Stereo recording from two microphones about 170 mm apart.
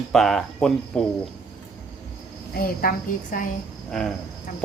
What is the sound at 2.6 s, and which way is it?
Speech, 60° left (ahead or behind).